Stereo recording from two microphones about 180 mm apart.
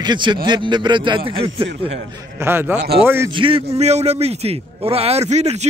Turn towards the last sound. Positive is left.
turn(degrees=-35)  # may be behind; listen again after turning